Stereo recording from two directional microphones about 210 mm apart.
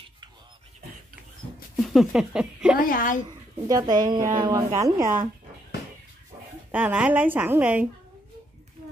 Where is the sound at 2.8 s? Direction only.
40° left (ahead or behind).